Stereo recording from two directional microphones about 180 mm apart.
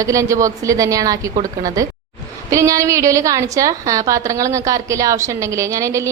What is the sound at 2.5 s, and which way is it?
A woman's voice, 15° right (ahead or behind).